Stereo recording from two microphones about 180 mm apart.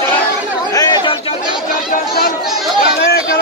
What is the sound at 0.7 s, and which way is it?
Chatter, 25° left (ahead or behind).